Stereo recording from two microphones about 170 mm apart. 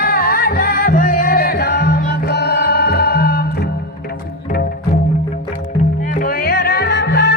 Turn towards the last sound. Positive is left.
turn(degrees=75)  # may be behind; listen again after turning